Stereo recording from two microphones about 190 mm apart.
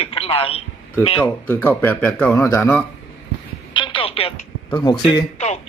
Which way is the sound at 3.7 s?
25° left (ahead or behind).